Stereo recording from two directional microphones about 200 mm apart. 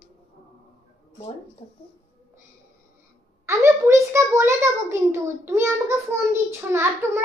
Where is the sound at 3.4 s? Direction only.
15° right (ahead or behind).